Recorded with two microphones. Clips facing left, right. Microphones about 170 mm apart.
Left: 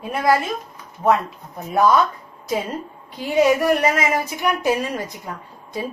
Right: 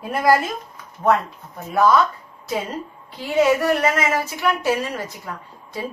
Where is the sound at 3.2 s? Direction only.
15° left (ahead or behind).